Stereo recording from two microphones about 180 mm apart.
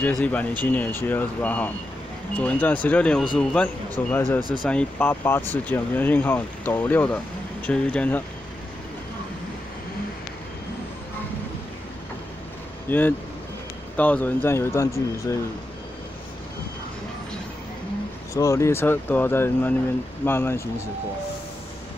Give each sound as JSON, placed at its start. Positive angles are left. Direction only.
{"t": 0.0, "sound": "speech", "side_deg": 10}
{"t": 4.4, "sound": "speech", "side_deg": -25}
{"t": 4.6, "sound": "speech", "side_deg": 5}
{"t": 12.9, "sound": "speech", "side_deg": 10}
{"t": 18.3, "sound": "speech", "side_deg": 15}